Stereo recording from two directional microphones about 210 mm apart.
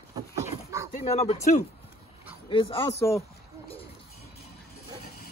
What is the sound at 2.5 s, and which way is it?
Speech, 25° left (ahead or behind).